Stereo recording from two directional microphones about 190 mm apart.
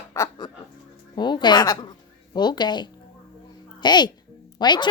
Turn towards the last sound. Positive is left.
turn(degrees=25)  # may be behind; listen again after turning